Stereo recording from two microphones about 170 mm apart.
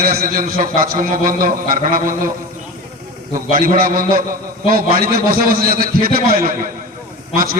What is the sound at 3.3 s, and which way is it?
Speech, 55° right (ahead or behind).